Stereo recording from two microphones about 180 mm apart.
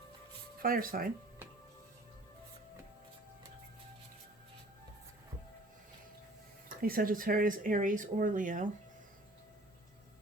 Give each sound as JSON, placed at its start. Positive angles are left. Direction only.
{"t": 0.6, "sound": "speech", "side_deg": -55}
{"t": 6.8, "sound": "speech", "side_deg": -55}